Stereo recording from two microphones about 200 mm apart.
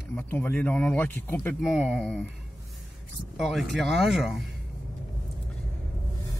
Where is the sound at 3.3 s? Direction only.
Centre (ahead or behind).